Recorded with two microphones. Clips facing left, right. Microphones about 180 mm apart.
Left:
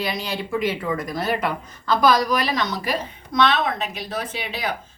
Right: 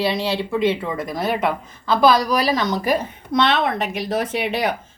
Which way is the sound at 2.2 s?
35° right (ahead or behind).